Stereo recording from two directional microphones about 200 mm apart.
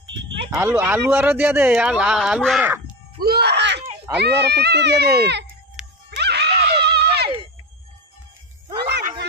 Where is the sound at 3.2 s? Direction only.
55° right (ahead or behind).